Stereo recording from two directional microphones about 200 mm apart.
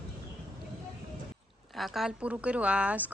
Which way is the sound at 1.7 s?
Centre (ahead or behind).